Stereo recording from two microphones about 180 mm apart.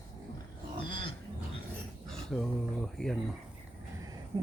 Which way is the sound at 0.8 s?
30° left (ahead or behind).